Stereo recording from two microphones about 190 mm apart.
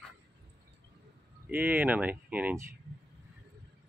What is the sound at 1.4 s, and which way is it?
Speech, 10° right (ahead or behind).